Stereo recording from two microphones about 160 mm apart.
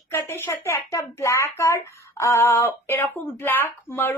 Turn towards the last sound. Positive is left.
turn(degrees=15)  # may be behind; listen again after turning